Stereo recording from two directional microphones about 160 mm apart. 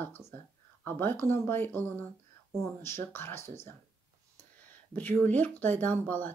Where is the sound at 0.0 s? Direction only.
10° left (ahead or behind).